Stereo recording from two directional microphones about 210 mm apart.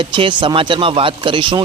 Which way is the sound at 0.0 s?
25° right (ahead or behind).